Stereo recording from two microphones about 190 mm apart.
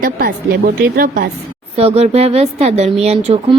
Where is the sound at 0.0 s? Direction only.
50° right (ahead or behind).